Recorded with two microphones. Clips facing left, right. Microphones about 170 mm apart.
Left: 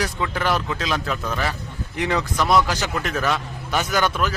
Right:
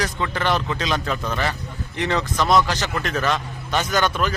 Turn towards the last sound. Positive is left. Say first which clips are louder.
# even
turn(degrees=5)  # may be behind; listen again after turning